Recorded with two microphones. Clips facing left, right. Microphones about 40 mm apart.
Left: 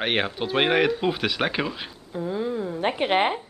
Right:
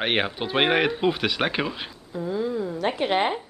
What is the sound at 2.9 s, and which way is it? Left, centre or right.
Speech, left.